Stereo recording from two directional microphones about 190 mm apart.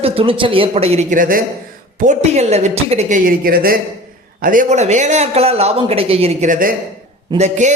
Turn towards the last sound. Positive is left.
turn(degrees=-40)  # may be behind; listen again after turning